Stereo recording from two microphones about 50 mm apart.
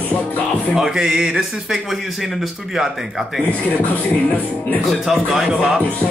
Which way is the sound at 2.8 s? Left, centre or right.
Centre.